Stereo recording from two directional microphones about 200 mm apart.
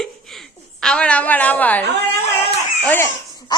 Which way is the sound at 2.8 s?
10° left (ahead or behind).